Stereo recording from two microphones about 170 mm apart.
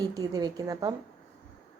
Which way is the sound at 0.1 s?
20° right (ahead or behind).